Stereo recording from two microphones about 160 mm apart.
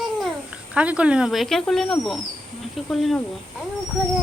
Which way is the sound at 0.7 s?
5° right (ahead or behind).